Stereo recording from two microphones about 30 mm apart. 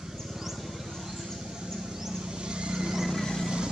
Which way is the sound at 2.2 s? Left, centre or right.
Right.